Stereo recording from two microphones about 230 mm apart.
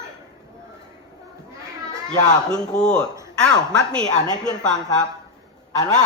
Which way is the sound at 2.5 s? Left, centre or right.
Centre.